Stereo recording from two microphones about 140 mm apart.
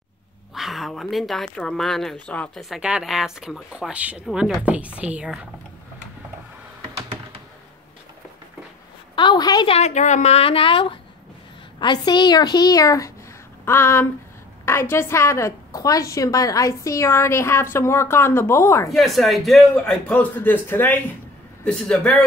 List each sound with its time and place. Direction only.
0.6 s a man's voice: centre (ahead or behind)
2.7 s speech: 5° right (ahead or behind)
9.1 s a woman's voice: 35° left (ahead or behind)
9.7 s a woman's voice: 50° left (ahead or behind); by 18.9 s 20° left (ahead or behind)
18.9 s a man's voice: centre (ahead or behind)